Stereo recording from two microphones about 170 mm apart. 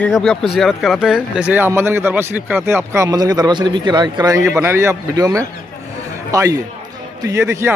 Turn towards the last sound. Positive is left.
turn(degrees=-15)  # may be behind; listen again after turning